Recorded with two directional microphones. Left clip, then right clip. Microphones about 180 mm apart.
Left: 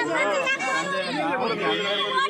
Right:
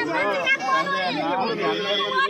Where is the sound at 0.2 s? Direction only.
10° right (ahead or behind).